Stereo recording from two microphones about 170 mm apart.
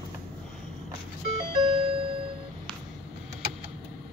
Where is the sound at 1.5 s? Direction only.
35° right (ahead or behind).